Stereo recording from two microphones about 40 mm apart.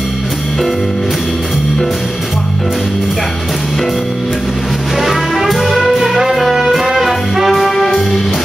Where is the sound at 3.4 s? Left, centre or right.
Centre.